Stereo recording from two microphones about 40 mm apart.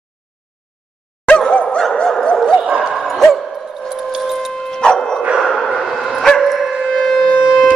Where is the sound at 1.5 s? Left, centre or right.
Left.